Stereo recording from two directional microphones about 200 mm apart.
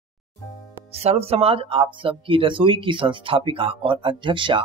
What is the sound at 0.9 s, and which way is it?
Speech, 30° right (ahead or behind).